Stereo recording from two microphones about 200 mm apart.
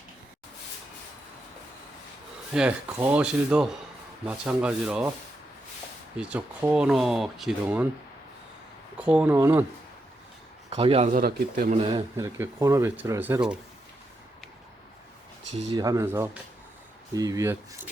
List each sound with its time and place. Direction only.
2.5 s speech: 5° right (ahead or behind)
6.1 s speech: 5° right (ahead or behind)
9.0 s speech: 5° right (ahead or behind)
10.7 s speech: 30° right (ahead or behind)
11.8 s speech: 25° right (ahead or behind)
12.1 s speech: 15° right (ahead or behind)
15.7 s speech: 15° right (ahead or behind)